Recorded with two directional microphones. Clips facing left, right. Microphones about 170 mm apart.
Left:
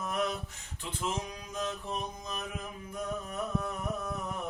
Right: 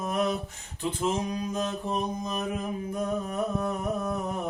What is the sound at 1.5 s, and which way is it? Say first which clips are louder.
Mantra: right 6 dB; 40° right (ahead or behind).